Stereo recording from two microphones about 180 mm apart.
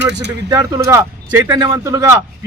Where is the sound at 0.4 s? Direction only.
20° right (ahead or behind).